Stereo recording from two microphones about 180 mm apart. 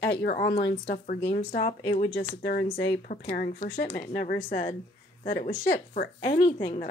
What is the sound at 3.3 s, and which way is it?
A woman's voice, 50° left (ahead or behind).